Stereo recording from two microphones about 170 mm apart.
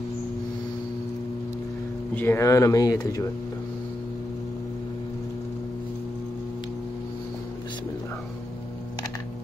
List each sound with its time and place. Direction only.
2.1 s speech: 15° left (ahead or behind)